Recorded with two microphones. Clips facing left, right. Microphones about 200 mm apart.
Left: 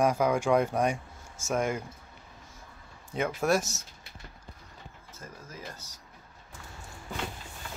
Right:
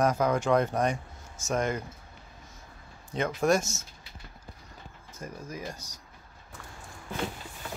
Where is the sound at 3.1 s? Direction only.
10° left (ahead or behind).